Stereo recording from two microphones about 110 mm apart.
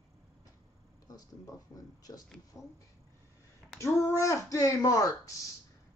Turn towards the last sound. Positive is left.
turn(degrees=30)  # may be behind; listen again after turning